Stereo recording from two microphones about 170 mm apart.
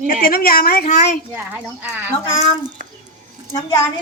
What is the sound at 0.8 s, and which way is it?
Speech, 45° left (ahead or behind).